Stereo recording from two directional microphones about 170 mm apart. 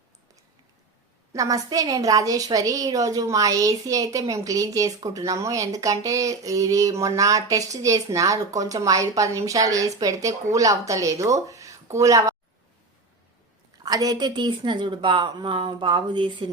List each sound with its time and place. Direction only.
1.3 s a woman's voice: 20° right (ahead or behind)
13.8 s a woman's voice: 20° right (ahead or behind)